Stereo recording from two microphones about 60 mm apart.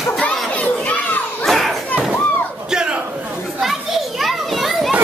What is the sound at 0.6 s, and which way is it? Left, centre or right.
Children playing, left.